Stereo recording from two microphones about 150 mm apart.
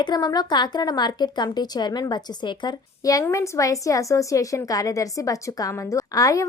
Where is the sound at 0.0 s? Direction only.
25° left (ahead or behind).